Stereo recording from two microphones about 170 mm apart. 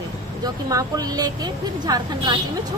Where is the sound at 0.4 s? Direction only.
20° right (ahead or behind).